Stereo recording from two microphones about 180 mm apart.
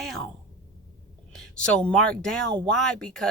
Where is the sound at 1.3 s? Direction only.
5° left (ahead or behind).